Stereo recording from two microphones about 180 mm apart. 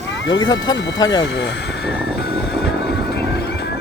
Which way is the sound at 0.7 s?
20° left (ahead or behind).